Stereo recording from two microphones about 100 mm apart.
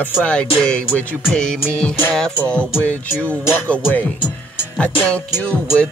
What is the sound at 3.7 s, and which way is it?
Music, 15° left (ahead or behind).